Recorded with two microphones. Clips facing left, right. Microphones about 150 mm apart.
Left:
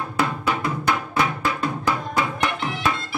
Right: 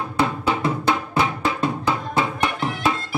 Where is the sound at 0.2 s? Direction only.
25° right (ahead or behind).